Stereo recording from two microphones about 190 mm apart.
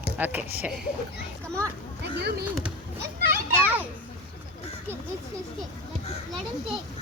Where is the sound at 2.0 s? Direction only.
60° right (ahead or behind).